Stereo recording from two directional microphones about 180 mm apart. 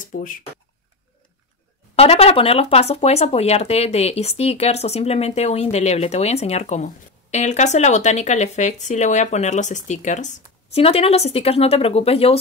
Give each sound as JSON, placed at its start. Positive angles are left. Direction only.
{"t": 0.0, "sound": "speech", "side_deg": 45}
{"t": 2.0, "sound": "speech", "side_deg": 35}